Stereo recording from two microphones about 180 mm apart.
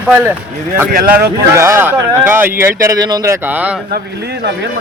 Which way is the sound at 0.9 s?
55° right (ahead or behind).